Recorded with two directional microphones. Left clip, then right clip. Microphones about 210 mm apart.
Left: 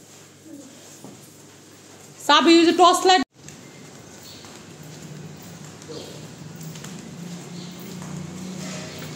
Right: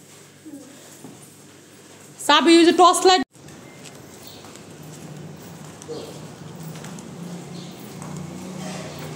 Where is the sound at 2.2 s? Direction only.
15° right (ahead or behind).